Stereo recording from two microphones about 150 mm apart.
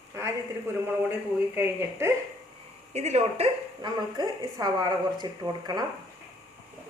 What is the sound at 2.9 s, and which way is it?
A woman's voice, 45° right (ahead or behind).